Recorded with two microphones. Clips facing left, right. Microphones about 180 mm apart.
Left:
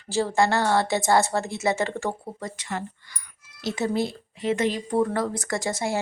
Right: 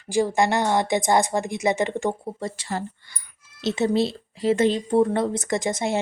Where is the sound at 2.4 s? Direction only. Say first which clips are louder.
Right 3 dB; 30° right (ahead or behind).